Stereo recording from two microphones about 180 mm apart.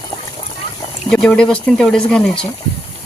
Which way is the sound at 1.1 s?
5° left (ahead or behind).